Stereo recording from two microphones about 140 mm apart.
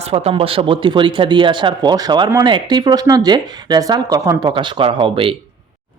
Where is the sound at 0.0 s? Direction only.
45° right (ahead or behind).